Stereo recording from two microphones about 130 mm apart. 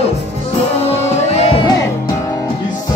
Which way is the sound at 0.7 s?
55° left (ahead or behind).